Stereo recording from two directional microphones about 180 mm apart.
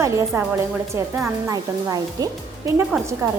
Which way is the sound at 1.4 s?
20° right (ahead or behind).